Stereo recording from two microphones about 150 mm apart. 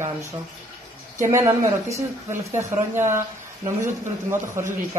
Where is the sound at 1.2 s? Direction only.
20° right (ahead or behind).